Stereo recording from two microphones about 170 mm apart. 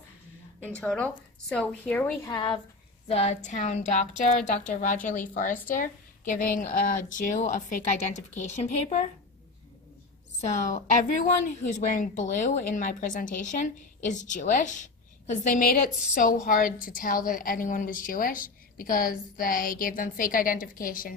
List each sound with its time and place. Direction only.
0.6 s speech: 5° left (ahead or behind)
2.2 s speech: 25° left (ahead or behind)
3.1 s a woman's voice: 35° left (ahead or behind)
10.4 s a woman's voice: 45° left (ahead or behind)